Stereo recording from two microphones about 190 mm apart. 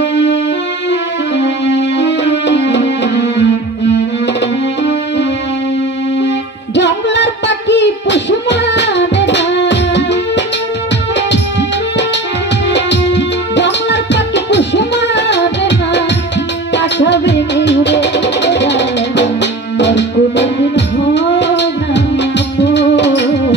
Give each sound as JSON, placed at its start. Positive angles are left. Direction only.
{"t": 1.3, "sound": "music", "side_deg": 65}
{"t": 6.2, "sound": "music", "side_deg": 65}
{"t": 12.7, "sound": "music", "side_deg": 65}